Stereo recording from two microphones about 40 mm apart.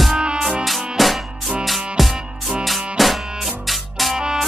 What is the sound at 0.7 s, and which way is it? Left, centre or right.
Music, centre.